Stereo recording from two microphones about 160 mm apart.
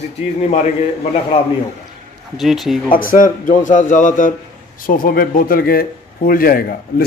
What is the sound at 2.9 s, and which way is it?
A man's voice, 60° left (ahead or behind).